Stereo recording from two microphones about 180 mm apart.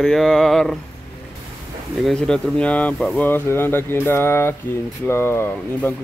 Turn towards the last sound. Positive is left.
turn(degrees=15)  # may be behind; listen again after turning